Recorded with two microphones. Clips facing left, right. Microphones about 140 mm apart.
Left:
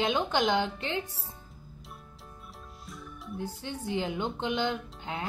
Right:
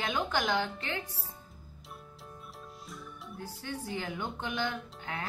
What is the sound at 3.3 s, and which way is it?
Speech, 20° left (ahead or behind).